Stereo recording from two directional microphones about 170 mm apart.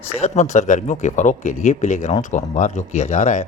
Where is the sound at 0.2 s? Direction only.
45° left (ahead or behind).